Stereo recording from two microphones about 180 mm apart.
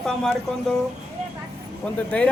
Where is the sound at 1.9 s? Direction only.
5° left (ahead or behind).